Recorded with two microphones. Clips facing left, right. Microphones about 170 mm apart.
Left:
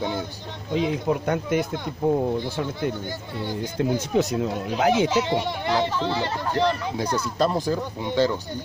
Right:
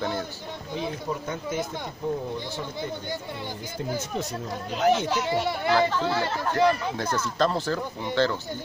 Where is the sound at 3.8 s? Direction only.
90° left.